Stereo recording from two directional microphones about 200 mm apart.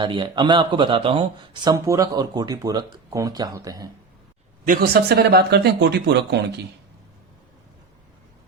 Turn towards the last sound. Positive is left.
turn(degrees=-55)  # may be behind; listen again after turning